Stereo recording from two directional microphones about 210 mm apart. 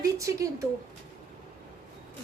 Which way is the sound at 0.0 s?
15° right (ahead or behind).